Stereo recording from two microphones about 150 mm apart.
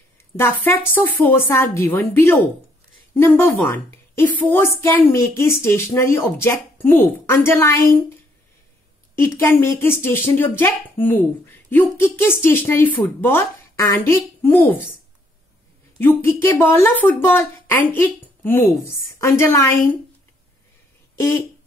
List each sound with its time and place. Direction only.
0.7 s a woman's voice: 15° left (ahead or behind)
9.1 s a woman's voice: 15° left (ahead or behind)
16.0 s a woman's voice: 15° left (ahead or behind)